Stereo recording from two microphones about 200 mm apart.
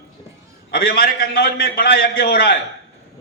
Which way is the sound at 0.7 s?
45° left (ahead or behind).